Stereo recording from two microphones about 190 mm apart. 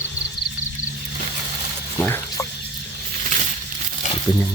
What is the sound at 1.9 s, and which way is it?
Water, 15° left (ahead or behind).